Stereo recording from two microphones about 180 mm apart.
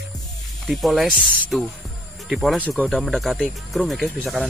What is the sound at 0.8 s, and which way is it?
Speech, centre (ahead or behind).